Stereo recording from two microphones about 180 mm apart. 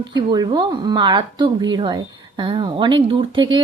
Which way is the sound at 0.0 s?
25° right (ahead or behind).